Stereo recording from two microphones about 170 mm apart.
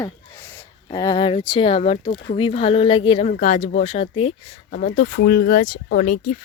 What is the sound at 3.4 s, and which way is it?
Speech, 45° left (ahead or behind).